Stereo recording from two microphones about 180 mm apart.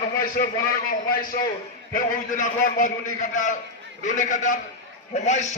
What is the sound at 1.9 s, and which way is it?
A man's voice, 45° left (ahead or behind).